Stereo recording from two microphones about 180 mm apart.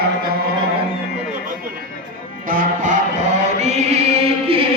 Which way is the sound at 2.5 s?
45° right (ahead or behind).